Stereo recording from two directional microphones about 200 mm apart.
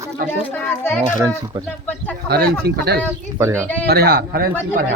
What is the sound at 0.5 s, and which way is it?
Speech, 10° left (ahead or behind).